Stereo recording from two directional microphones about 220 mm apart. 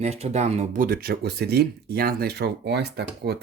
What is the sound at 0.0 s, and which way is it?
Speech, 30° right (ahead or behind).